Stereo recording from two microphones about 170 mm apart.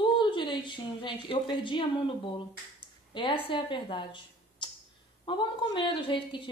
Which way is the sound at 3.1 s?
30° left (ahead or behind).